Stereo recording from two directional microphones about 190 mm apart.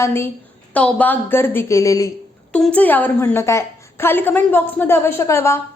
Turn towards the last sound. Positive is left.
turn(degrees=15)  # may be behind; listen again after turning